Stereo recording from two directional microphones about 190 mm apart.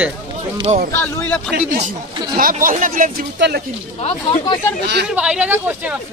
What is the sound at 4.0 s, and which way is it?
Speech, 25° left (ahead or behind).